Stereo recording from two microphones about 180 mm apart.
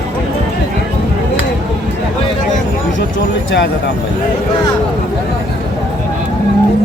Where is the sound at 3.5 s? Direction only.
80° left.